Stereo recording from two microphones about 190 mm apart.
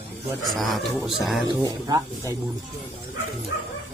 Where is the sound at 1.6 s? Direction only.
20° right (ahead or behind).